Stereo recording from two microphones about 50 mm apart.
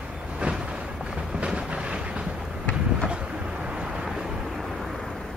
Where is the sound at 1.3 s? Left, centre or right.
Right.